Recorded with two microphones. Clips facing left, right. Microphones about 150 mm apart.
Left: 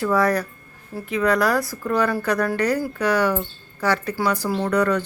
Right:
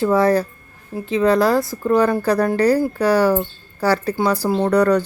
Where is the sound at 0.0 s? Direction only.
25° right (ahead or behind).